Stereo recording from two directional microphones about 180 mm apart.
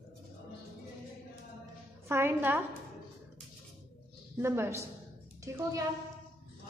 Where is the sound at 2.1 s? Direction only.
10° right (ahead or behind).